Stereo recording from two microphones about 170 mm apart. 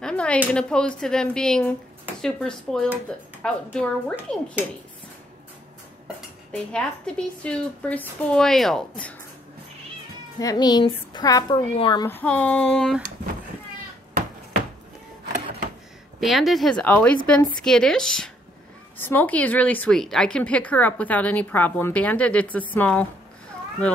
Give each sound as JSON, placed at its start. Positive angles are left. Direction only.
{"t": 0.0, "sound": "a sound", "side_deg": 5}
{"t": 0.6, "sound": "a woman's voice", "side_deg": 5}
{"t": 6.5, "sound": "a woman's voice", "side_deg": 5}
{"t": 10.4, "sound": "a woman's voice", "side_deg": 25}
{"t": 12.1, "sound": "speech", "side_deg": 10}
{"t": 16.2, "sound": "a woman's voice", "side_deg": 0}